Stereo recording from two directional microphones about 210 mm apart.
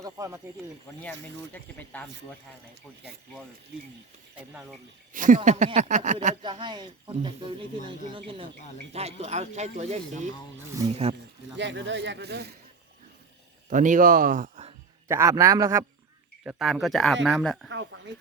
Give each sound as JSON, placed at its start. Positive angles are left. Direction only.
{"t": 0.0, "sound": "a man's voice", "side_deg": -15}
{"t": 1.5, "sound": "speech", "side_deg": 10}
{"t": 5.1, "sound": "speech", "side_deg": -40}
{"t": 6.4, "sound": "speech", "side_deg": -20}
{"t": 10.7, "sound": "a man's voice", "side_deg": -15}
{"t": 11.5, "sound": "speech", "side_deg": -60}
{"t": 13.7, "sound": "speech", "side_deg": -35}
{"t": 15.0, "sound": "a man's voice", "side_deg": -15}
{"t": 16.4, "sound": "speech", "side_deg": -5}
{"t": 17.7, "sound": "speech", "side_deg": -60}